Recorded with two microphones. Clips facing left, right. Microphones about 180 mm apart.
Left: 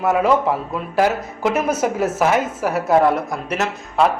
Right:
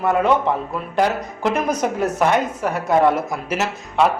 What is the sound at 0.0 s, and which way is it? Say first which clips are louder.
A woman's voice: left 1 dB; 5° left (ahead or behind).